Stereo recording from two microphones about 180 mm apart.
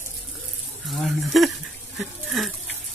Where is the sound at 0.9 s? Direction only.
Centre (ahead or behind).